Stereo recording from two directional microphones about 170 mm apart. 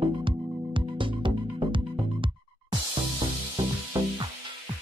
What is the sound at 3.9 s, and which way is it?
Music, 20° right (ahead or behind).